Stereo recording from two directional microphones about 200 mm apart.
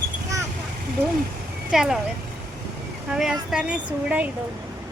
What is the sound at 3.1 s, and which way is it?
Speech, centre (ahead or behind).